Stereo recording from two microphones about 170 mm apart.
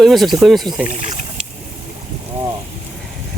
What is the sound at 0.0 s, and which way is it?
Speech, centre (ahead or behind).